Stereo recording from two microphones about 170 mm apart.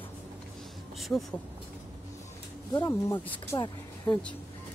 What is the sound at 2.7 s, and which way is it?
Speech, 20° left (ahead or behind).